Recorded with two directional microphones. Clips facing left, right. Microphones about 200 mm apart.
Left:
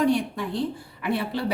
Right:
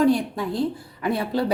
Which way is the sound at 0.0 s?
40° right (ahead or behind).